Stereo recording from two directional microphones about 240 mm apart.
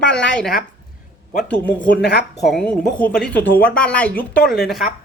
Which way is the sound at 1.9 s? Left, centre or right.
Left.